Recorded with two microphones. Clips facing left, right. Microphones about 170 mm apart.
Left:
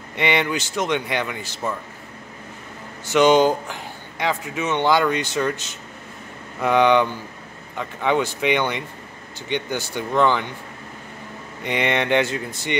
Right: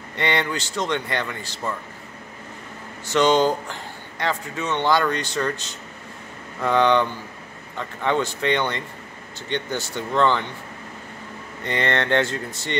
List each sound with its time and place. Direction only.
0.1 s a man's voice: 15° left (ahead or behind)
3.1 s a man's voice: 15° left (ahead or behind)
9.9 s a man's voice: 10° left (ahead or behind)
11.6 s a man's voice: 15° left (ahead or behind)